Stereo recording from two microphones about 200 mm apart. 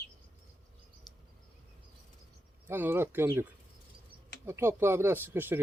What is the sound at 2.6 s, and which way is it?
Speech, 10° right (ahead or behind).